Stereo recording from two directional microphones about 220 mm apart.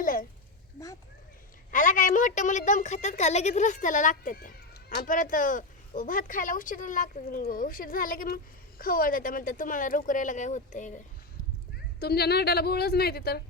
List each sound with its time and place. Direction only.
0.0 s a sound: 40° left (ahead or behind)
1.7 s a woman's voice: 35° left (ahead or behind)
11.9 s a woman's voice: 45° left (ahead or behind)